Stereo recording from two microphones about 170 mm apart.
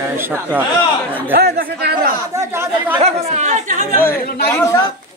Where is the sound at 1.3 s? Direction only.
70° right (ahead or behind).